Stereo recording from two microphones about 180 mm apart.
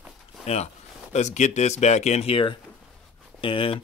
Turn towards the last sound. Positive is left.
turn(degrees=30)  # may be behind; listen again after turning